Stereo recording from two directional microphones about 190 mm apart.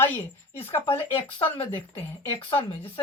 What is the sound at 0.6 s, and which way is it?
Speech, 30° left (ahead or behind).